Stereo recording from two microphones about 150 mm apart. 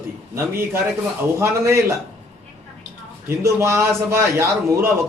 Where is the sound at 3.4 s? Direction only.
15° right (ahead or behind).